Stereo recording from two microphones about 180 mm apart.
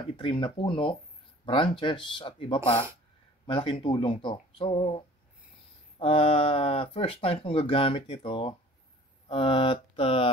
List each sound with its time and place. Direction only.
0.2 s speech: 30° left (ahead or behind)